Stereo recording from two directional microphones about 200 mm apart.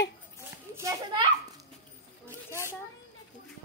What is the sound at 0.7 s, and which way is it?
Speech, 15° right (ahead or behind).